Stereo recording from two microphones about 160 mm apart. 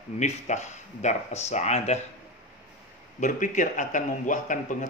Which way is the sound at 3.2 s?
55° left (ahead or behind).